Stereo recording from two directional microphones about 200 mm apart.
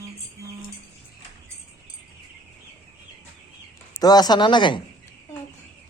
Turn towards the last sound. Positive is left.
turn(degrees=25)  # may be behind; listen again after turning